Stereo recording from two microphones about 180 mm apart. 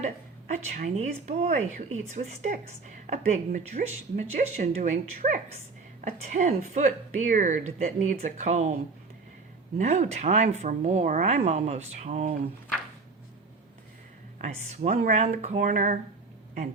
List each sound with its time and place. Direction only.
0.0 s speech: 40° right (ahead or behind)
9.7 s speech: 40° right (ahead or behind)
14.3 s speech: 45° right (ahead or behind)